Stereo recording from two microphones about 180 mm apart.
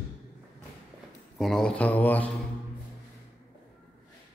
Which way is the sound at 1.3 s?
Centre (ahead or behind).